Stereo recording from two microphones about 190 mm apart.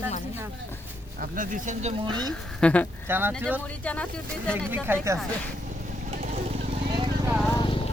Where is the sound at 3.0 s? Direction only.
10° right (ahead or behind).